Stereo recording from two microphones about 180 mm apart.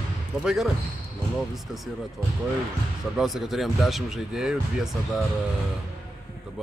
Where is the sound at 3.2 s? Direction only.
Centre (ahead or behind).